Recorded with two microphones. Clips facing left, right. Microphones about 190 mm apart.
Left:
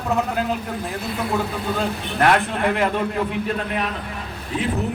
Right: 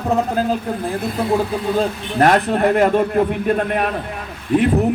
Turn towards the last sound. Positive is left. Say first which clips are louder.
# right 9 dB
turn(degrees=-55)  # may be behind; listen again after turning